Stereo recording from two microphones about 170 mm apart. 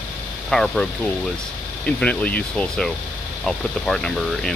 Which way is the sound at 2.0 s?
5° left (ahead or behind).